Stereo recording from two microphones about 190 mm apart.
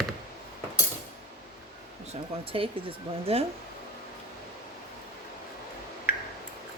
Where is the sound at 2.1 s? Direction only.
30° right (ahead or behind).